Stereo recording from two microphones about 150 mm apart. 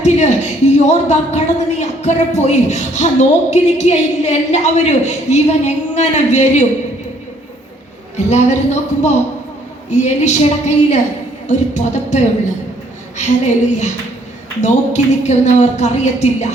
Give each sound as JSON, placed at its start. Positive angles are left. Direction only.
{"t": 0.0, "sound": "a sound", "side_deg": 50}
{"t": 1.8, "sound": "speech", "side_deg": 50}
{"t": 8.1, "sound": "speech", "side_deg": 50}